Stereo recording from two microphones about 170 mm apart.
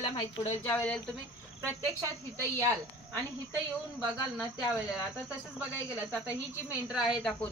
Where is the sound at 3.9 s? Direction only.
Centre (ahead or behind).